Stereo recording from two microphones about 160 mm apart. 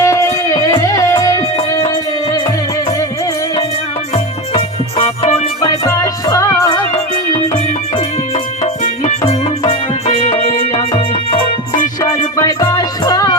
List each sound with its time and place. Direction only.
0.0 s music: 20° left (ahead or behind)
4.5 s music: 35° left (ahead or behind)
5.6 s music: 20° left (ahead or behind)
8.6 s music: 45° left (ahead or behind)
12.4 s music: 20° left (ahead or behind)